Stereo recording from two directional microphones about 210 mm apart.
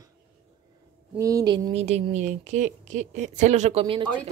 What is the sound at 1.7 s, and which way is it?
A woman's voice, 30° right (ahead or behind).